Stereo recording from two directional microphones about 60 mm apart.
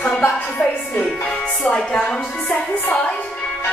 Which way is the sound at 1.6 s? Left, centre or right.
Centre.